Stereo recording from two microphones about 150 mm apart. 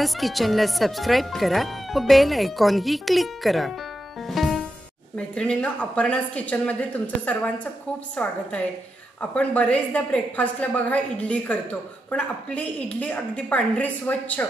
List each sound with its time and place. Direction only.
0.0 s speech: centre (ahead or behind)
4.3 s music: centre (ahead or behind)
5.1 s a woman's voice: 5° left (ahead or behind)